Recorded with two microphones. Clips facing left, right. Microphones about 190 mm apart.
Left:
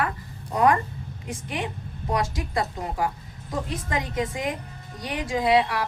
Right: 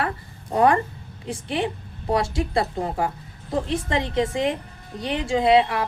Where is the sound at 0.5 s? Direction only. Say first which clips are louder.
Right 2 dB; 30° right (ahead or behind).